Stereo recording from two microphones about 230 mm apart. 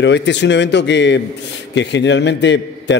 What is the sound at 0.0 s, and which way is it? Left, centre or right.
A man's voice, left.